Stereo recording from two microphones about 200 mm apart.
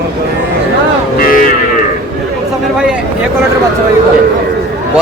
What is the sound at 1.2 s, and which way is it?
Cattle, 45° left (ahead or behind).